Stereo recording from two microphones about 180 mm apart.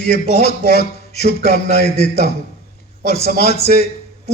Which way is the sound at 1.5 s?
60° left (ahead or behind).